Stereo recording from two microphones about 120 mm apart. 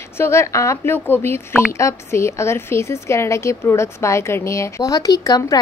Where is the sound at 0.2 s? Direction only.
25° left (ahead or behind).